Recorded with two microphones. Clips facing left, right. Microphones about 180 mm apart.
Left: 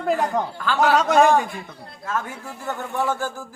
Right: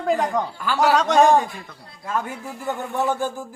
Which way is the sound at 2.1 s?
15° right (ahead or behind).